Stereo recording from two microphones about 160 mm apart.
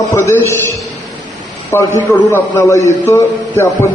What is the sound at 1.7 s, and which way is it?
A man's voice, 15° left (ahead or behind).